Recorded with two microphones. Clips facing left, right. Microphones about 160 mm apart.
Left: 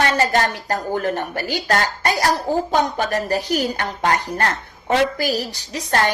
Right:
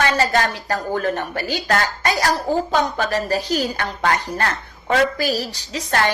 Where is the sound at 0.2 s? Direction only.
15° left (ahead or behind).